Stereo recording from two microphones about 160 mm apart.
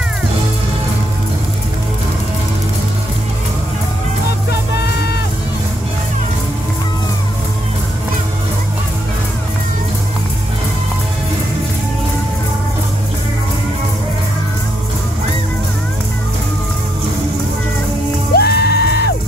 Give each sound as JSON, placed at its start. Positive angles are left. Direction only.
{"t": 4.5, "sound": "music", "side_deg": 90}
{"t": 18.3, "sound": "music", "side_deg": 85}